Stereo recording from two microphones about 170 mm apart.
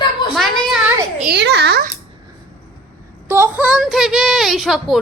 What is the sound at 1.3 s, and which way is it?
Speech, 80° right.